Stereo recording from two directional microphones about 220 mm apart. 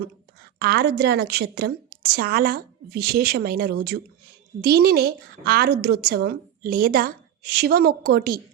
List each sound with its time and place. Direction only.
0.6 s a woman's voice: 45° right (ahead or behind)